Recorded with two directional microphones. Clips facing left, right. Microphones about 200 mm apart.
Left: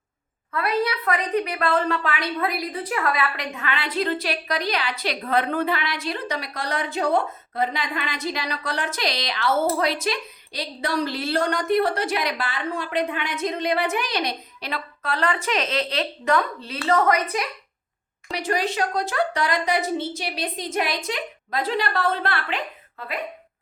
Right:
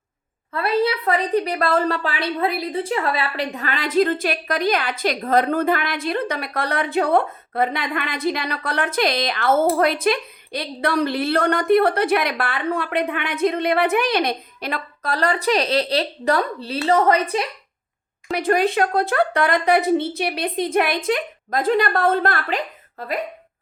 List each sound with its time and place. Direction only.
0.5 s a woman's voice: 30° right (ahead or behind)
18.3 s a woman's voice: 55° right (ahead or behind)